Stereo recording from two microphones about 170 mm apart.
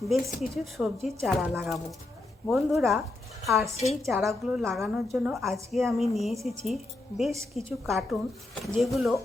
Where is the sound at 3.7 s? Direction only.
40° left (ahead or behind).